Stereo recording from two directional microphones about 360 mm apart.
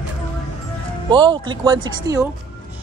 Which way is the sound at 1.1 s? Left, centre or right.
Centre.